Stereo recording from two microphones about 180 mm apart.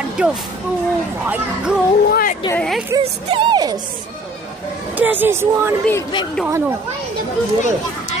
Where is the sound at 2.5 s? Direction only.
5° left (ahead or behind).